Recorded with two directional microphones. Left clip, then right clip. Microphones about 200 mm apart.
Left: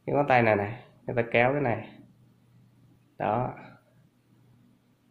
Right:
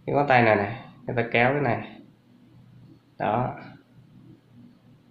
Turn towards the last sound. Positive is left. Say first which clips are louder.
# right 3 dB
turn(degrees=25)  # may be behind; listen again after turning